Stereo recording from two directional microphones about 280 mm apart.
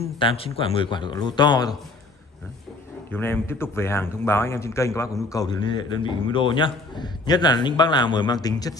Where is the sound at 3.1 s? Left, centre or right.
Centre.